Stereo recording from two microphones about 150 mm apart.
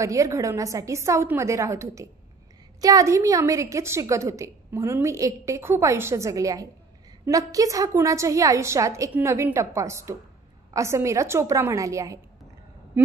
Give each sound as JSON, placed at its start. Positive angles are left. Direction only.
{"t": 0.0, "sound": "a woman's voice", "side_deg": -20}